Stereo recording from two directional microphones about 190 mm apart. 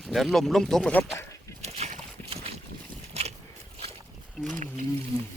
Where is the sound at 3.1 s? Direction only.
35° right (ahead or behind).